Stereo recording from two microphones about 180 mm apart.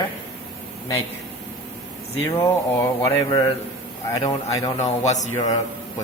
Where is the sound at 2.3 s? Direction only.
15° left (ahead or behind).